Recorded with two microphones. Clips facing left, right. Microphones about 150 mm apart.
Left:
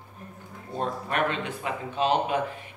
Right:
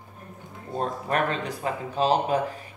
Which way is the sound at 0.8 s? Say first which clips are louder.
Right 2 dB; 40° right (ahead or behind).